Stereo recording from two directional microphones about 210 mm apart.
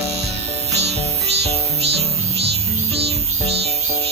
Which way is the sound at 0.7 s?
30° right (ahead or behind).